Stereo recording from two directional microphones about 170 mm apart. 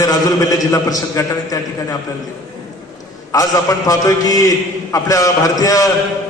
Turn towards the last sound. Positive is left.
turn(degrees=20)  # may be behind; listen again after turning